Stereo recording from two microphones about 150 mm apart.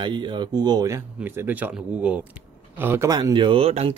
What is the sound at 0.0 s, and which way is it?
Speech, 30° right (ahead or behind).